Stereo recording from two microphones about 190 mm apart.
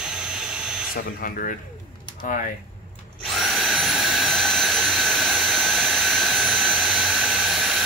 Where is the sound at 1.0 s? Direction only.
50° left (ahead or behind).